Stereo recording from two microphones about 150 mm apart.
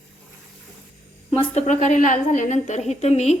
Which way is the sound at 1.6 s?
60° left (ahead or behind).